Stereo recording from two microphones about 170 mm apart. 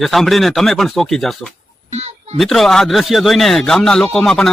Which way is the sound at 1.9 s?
40° right (ahead or behind).